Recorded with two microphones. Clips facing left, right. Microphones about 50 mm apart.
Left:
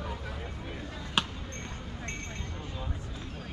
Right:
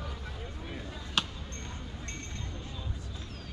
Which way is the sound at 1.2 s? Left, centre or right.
Centre.